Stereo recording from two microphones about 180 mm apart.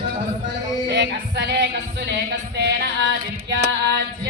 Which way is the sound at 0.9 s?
75° right (ahead or behind).